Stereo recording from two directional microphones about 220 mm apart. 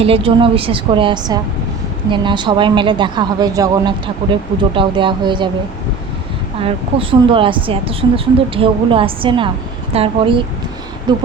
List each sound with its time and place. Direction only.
0.0 s a woman's voice: 25° right (ahead or behind)
6.6 s a woman's voice: 25° right (ahead or behind)